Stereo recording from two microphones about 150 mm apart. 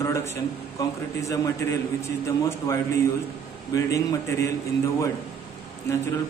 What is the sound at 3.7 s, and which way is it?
Speech, 20° left (ahead or behind).